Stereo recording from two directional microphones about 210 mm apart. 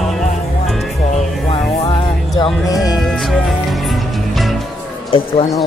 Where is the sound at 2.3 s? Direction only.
15° left (ahead or behind).